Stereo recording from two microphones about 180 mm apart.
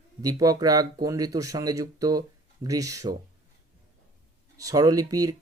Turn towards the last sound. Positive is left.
turn(degrees=-20)  # may be behind; listen again after turning